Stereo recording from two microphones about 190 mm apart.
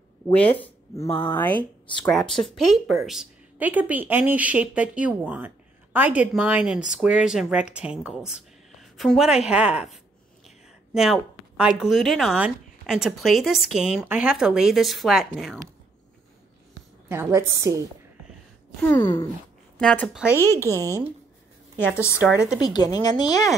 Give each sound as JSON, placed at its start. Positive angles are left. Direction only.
{"t": 1.0, "sound": "speech", "side_deg": 30}
{"t": 2.0, "sound": "a woman's voice", "side_deg": 0}
{"t": 17.1, "sound": "a woman's voice", "side_deg": -15}
{"t": 18.8, "sound": "a sound", "side_deg": 10}
{"t": 19.8, "sound": "speech", "side_deg": 5}
{"t": 20.8, "sound": "a woman's voice", "side_deg": -15}
{"t": 21.7, "sound": "a sound", "side_deg": 10}
{"t": 22.6, "sound": "speech", "side_deg": 20}